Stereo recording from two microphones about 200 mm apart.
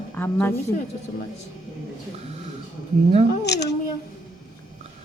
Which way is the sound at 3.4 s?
55° left (ahead or behind).